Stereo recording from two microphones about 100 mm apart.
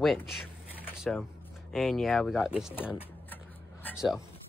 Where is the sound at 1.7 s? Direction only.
Centre (ahead or behind).